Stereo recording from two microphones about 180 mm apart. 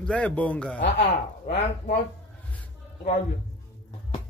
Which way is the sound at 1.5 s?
50° left (ahead or behind).